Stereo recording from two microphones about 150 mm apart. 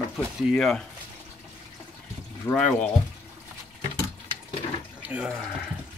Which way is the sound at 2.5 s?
10° left (ahead or behind).